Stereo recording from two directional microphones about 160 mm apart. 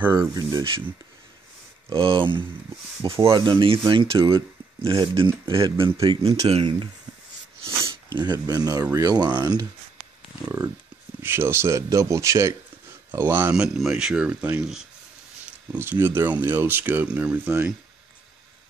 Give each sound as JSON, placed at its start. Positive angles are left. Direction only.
{"t": 0.0, "sound": "speech", "side_deg": -15}
{"t": 1.9, "sound": "speech", "side_deg": -35}
{"t": 8.1, "sound": "speech", "side_deg": -25}
{"t": 11.2, "sound": "speech", "side_deg": -15}